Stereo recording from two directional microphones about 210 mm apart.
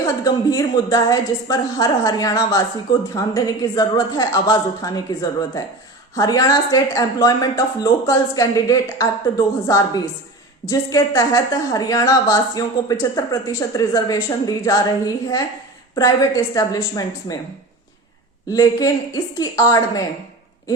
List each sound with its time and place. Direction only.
0.0 s speech: 15° left (ahead or behind)
18.4 s speech: 15° left (ahead or behind)